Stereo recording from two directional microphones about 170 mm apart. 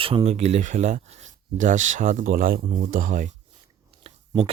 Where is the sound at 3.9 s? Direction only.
35° right (ahead or behind).